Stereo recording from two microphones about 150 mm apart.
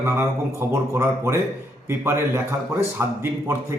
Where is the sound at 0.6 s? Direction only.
15° right (ahead or behind).